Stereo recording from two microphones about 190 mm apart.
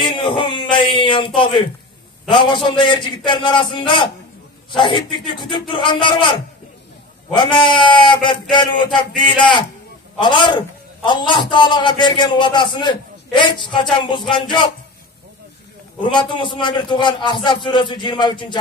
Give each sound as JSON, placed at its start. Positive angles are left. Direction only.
{"t": 0.0, "sound": "a sound", "side_deg": 25}
{"t": 2.2, "sound": "a man's voice", "side_deg": 25}
{"t": 7.3, "sound": "a man's voice", "side_deg": 25}
{"t": 16.0, "sound": "a man's voice", "side_deg": 25}